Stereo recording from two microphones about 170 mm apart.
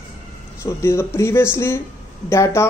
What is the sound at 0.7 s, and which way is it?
Speech, 15° left (ahead or behind).